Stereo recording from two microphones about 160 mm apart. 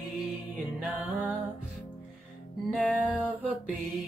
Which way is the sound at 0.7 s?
5° right (ahead or behind).